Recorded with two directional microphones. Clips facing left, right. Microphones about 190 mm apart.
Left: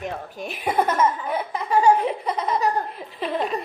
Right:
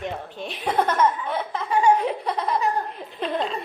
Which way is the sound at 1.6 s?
40° left (ahead or behind).